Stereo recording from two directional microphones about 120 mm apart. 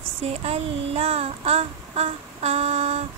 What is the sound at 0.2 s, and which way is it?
Child singing, 60° right (ahead or behind).